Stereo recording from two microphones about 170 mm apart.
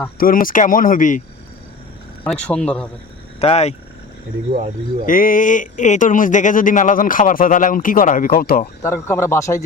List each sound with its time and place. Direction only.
0.2 s speech: 55° left (ahead or behind)
2.2 s speech: 5° left (ahead or behind)
3.4 s speech: 40° left (ahead or behind)
5.0 s speech: 55° left (ahead or behind)
8.8 s speech: 15° left (ahead or behind)